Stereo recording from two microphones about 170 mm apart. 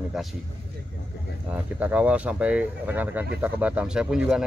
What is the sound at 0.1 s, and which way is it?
Speech, centre (ahead or behind).